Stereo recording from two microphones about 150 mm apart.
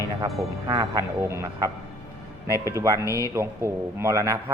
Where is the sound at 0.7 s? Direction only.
25° right (ahead or behind).